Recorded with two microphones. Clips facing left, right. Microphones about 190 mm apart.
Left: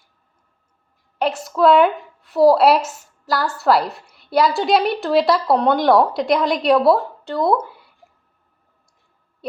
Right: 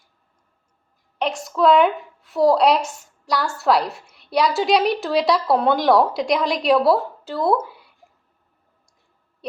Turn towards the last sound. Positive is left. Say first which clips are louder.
# left 1 dB
turn(degrees=0)  # may be behind; listen again after turning